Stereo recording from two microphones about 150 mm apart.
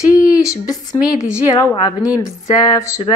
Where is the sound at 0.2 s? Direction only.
20° left (ahead or behind).